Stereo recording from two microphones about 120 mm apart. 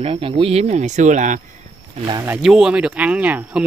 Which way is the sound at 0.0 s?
50° right (ahead or behind).